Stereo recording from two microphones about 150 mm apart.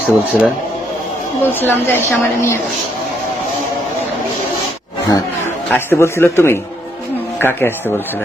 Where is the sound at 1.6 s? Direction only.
15° left (ahead or behind).